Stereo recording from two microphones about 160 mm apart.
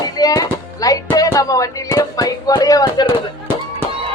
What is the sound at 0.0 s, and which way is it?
Speech, 20° left (ahead or behind).